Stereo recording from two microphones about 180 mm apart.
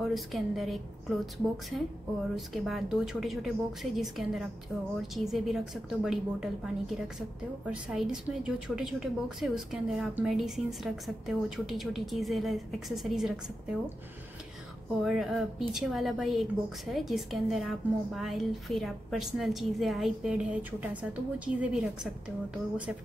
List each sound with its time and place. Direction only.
0.0 s a woman's voice: centre (ahead or behind)
15.0 s a woman's voice: centre (ahead or behind)